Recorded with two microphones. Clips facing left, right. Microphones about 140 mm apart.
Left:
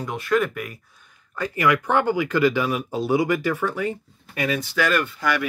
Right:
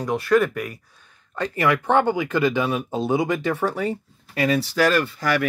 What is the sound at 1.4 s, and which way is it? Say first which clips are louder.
Speech: even; 30° right (ahead or behind).